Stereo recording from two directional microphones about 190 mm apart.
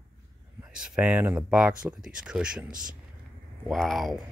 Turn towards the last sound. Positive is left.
turn(degrees=0)  # may be behind; listen again after turning